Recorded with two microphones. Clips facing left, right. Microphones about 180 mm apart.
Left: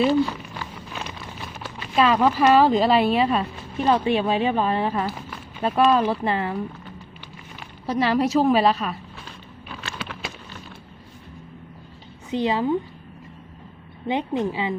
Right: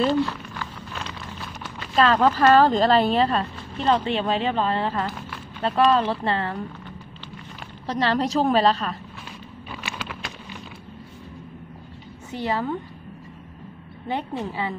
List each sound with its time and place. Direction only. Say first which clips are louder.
0.0 s speech: left 2 dB; 10° left (ahead or behind)
1.6 s speech: even; 10° left (ahead or behind)
7.8 s speech: left 2 dB; 10° left (ahead or behind)
12.3 s speech: left 4 dB; 15° left (ahead or behind)
14.0 s speech: left 4 dB; 15° left (ahead or behind)